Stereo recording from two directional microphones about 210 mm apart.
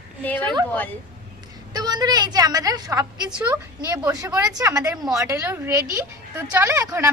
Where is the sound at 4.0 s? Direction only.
15° right (ahead or behind).